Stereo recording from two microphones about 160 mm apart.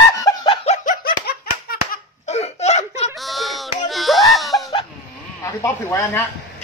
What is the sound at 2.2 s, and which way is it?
Laughter, 45° left (ahead or behind).